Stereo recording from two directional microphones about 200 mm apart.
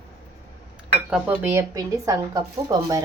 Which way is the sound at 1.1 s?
10° right (ahead or behind).